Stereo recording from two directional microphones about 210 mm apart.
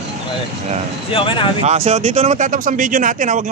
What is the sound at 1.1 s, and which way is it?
Speech, 25° left (ahead or behind).